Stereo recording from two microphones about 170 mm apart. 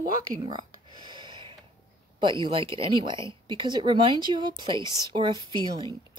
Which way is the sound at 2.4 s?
30° right (ahead or behind).